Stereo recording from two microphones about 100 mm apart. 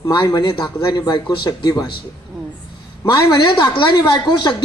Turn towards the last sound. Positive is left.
turn(degrees=45)  # may be behind; listen again after turning